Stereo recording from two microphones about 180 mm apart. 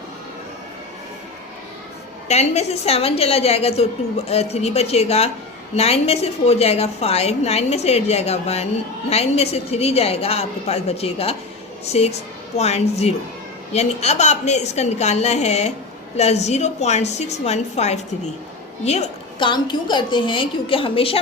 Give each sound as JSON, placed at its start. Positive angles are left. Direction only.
{"t": 2.2, "sound": "a woman's voice", "side_deg": 40}